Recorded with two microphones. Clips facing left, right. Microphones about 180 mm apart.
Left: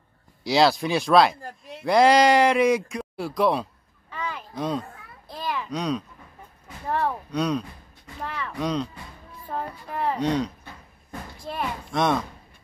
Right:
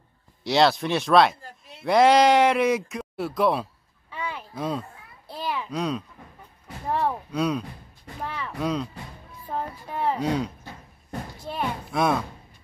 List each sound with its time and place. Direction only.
0.4 s speech: centre (ahead or behind)
4.1 s a sound: 5° right (ahead or behind)
6.9 s speech: 10° right (ahead or behind)